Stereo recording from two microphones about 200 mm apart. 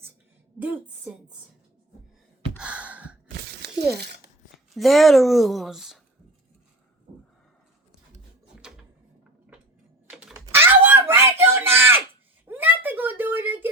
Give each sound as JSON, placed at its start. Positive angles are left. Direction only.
{"t": 0.6, "sound": "a woman's voice", "side_deg": -5}
{"t": 2.6, "sound": "sigh", "side_deg": -5}
{"t": 3.9, "sound": "speech", "side_deg": -55}
{"t": 4.7, "sound": "speech", "side_deg": 0}
{"t": 8.6, "sound": "drawer open or close", "side_deg": -5}
{"t": 10.1, "sound": "typing", "side_deg": -5}
{"t": 10.4, "sound": "a sound", "side_deg": -10}